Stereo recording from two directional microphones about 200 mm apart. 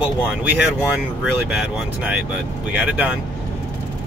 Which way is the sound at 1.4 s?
5° right (ahead or behind).